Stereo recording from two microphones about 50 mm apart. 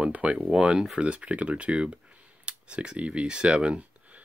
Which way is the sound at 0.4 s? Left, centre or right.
Centre.